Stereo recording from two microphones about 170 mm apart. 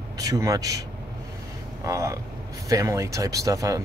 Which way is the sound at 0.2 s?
20° right (ahead or behind).